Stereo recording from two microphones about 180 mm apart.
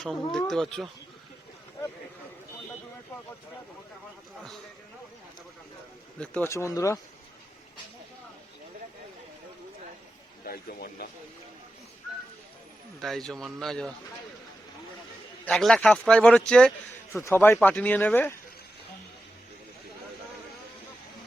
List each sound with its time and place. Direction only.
0.0 s speech: 5° left (ahead or behind)
6.1 s speech: 10° left (ahead or behind)
10.4 s speech: 55° left (ahead or behind)
13.0 s speech: centre (ahead or behind)
15.4 s a man's voice: 5° left (ahead or behind)